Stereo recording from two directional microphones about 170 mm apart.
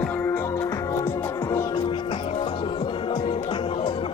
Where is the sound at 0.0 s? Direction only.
10° left (ahead or behind).